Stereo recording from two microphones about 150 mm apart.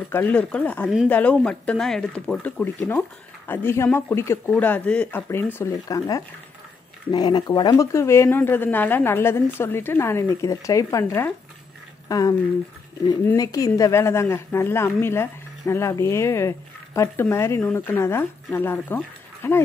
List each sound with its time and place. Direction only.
0.1 s a woman's voice: 10° left (ahead or behind)